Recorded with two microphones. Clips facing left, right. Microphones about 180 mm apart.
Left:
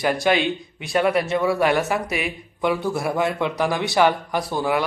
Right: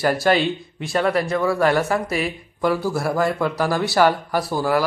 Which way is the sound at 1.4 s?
5° left (ahead or behind).